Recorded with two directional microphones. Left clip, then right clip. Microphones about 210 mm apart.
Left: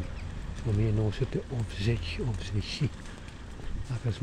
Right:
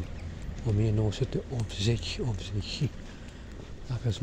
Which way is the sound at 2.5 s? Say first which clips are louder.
Left 1 dB; 10° left (ahead or behind).